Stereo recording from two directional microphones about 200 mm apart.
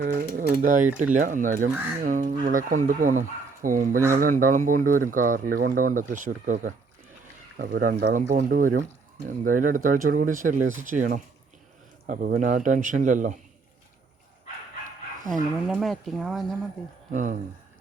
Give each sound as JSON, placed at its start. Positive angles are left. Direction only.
{"t": 0.0, "sound": "speech", "side_deg": -45}
{"t": 15.6, "sound": "speech", "side_deg": 0}
{"t": 17.1, "sound": "speech", "side_deg": -40}